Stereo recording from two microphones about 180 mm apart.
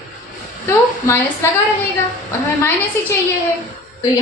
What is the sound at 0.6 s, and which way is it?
Speech, 15° left (ahead or behind).